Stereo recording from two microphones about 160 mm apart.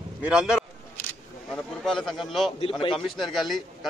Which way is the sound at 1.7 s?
5° left (ahead or behind).